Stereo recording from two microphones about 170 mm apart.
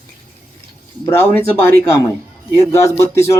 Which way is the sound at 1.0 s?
15° left (ahead or behind).